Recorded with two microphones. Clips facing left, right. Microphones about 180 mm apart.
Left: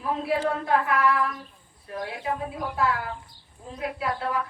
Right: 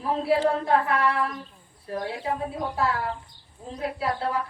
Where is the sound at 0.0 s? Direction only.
30° right (ahead or behind).